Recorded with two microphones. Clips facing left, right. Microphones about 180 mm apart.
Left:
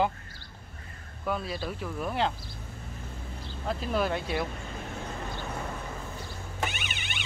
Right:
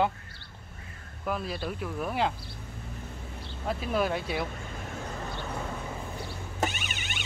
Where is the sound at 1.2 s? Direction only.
Centre (ahead or behind).